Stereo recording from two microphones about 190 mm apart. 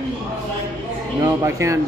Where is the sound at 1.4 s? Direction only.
15° right (ahead or behind).